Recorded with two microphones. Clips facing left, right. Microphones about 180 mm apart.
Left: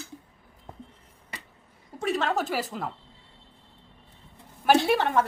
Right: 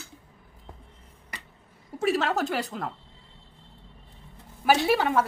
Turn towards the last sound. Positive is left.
turn(degrees=-5)  # may be behind; listen again after turning